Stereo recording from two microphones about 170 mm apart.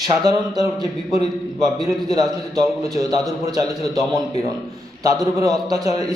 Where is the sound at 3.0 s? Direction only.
20° right (ahead or behind).